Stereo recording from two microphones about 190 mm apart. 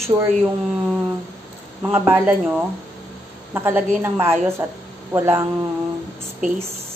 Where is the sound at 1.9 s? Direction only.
10° right (ahead or behind).